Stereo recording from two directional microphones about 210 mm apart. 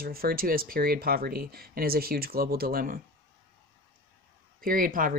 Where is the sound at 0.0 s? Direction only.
45° right (ahead or behind).